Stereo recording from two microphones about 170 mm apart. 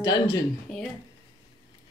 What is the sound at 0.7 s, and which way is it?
Speech, 5° left (ahead or behind).